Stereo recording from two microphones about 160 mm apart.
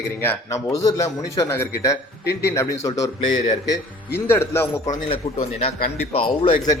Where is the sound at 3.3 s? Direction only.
45° left (ahead or behind).